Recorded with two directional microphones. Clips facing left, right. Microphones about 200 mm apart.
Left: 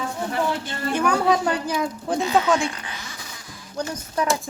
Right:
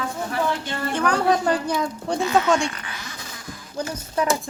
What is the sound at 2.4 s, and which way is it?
Speech, centre (ahead or behind).